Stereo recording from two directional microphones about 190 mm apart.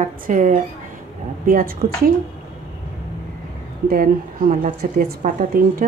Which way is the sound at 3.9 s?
45° right (ahead or behind).